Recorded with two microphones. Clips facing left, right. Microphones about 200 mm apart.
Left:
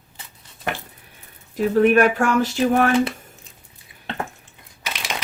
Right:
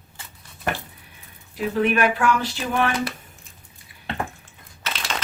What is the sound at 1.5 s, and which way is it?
Speech, 45° left (ahead or behind).